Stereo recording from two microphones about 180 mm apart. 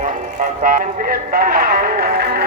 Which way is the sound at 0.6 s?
50° right (ahead or behind).